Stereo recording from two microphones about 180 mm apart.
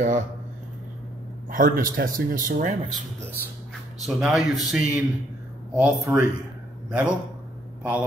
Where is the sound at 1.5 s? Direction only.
50° right (ahead or behind).